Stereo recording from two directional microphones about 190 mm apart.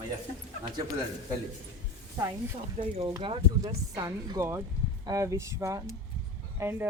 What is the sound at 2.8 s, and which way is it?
Speech, 40° right (ahead or behind).